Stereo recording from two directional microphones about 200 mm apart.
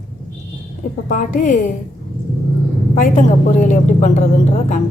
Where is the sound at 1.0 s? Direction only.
40° left (ahead or behind).